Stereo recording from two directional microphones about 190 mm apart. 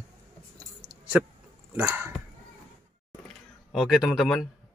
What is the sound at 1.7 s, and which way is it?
Dog, 10° right (ahead or behind).